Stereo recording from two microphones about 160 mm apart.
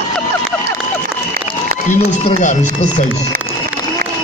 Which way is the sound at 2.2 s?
50° left (ahead or behind).